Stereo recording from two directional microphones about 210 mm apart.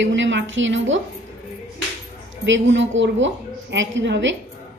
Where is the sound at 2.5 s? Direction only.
60° right (ahead or behind).